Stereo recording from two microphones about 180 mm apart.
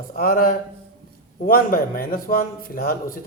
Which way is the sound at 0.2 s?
55° left (ahead or behind).